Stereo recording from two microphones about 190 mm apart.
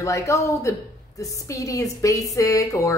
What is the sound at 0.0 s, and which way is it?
A woman's voice, 15° left (ahead or behind).